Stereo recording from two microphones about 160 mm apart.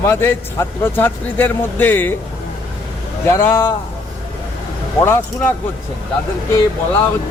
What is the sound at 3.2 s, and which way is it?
Speech, 15° left (ahead or behind).